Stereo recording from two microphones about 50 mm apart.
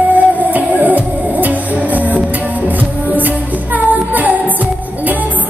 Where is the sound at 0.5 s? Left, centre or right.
Right.